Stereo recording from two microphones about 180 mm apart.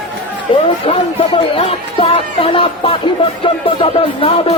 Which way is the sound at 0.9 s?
30° left (ahead or behind).